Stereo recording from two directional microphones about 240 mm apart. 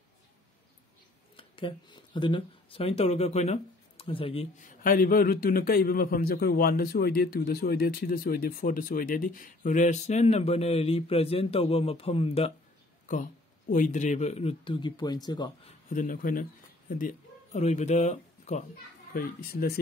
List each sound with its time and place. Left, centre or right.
1.3 s speech: centre
13.7 s speech: left; by 15.5 s centre
15.9 s speech: left
19.1 s speech: left